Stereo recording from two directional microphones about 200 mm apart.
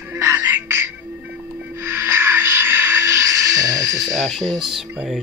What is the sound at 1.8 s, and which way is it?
Music, 10° right (ahead or behind).